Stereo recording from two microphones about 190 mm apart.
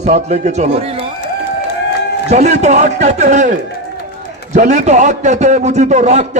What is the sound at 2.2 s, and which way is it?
A man's voice, 35° right (ahead or behind).